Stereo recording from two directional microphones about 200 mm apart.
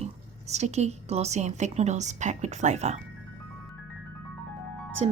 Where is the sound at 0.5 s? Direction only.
35° right (ahead or behind).